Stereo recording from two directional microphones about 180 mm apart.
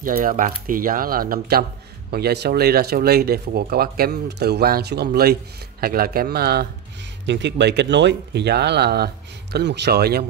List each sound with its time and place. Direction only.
0.0 s speech: 50° right (ahead or behind)
7.2 s speech: 80° right; by 10.2 s 60° right (ahead or behind)